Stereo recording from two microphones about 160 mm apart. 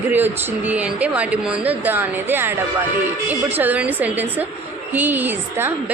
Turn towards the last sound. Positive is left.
turn(degrees=-10)  # may be behind; listen again after turning